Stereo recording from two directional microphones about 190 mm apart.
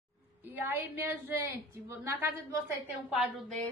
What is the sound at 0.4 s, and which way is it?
A woman's voice, 10° right (ahead or behind).